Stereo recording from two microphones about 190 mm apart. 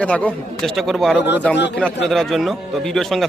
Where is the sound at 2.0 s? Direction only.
Centre (ahead or behind).